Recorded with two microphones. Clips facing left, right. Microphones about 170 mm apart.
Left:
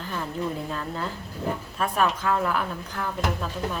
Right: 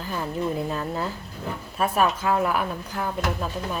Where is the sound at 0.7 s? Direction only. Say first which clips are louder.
Right 3 dB; 10° right (ahead or behind).